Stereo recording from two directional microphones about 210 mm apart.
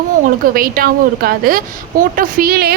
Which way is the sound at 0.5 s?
45° right (ahead or behind).